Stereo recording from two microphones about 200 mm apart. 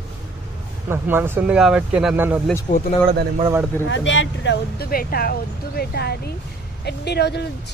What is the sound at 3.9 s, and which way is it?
Speech, 70° left (ahead or behind).